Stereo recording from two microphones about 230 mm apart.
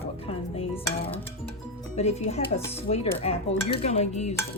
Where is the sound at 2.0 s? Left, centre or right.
Left.